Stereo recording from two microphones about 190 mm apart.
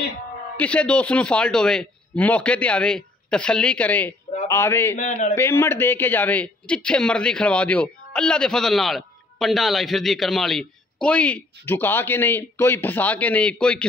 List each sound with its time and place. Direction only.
0.6 s a man's voice: 5° left (ahead or behind)
4.9 s a man's voice: 40° left (ahead or behind)
5.3 s speech: 15° left (ahead or behind)